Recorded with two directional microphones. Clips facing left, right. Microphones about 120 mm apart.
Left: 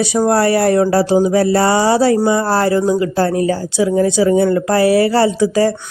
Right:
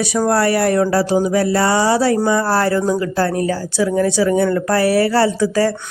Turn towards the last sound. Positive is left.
turn(degrees=15)  # may be behind; listen again after turning